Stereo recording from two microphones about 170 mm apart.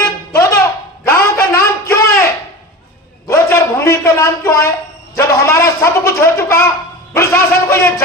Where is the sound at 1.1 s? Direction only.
15° left (ahead or behind).